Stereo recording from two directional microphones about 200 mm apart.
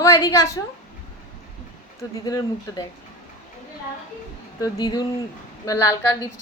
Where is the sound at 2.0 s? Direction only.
15° left (ahead or behind).